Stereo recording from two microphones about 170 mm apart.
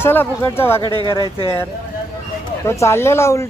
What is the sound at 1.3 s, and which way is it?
Speech, 35° left (ahead or behind).